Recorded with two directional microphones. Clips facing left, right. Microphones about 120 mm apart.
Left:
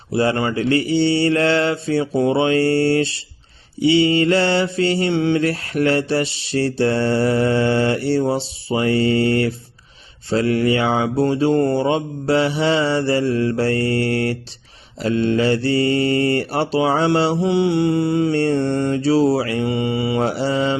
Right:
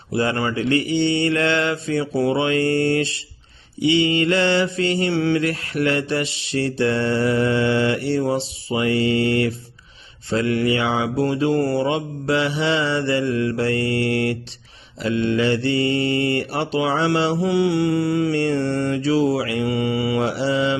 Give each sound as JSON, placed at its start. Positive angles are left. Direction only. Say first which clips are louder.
{"t": 0.1, "sound": "mantra", "louder": "left 3 dB", "side_deg": 30}
{"t": 5.1, "sound": "mantra", "louder": "even", "side_deg": 20}
{"t": 5.4, "sound": "mantra", "louder": "left 3 dB", "side_deg": 35}
{"t": 17.4, "sound": "mantra", "louder": "left 2 dB", "side_deg": 25}
{"t": 20.2, "sound": "mantra", "louder": "left 1 dB", "side_deg": 40}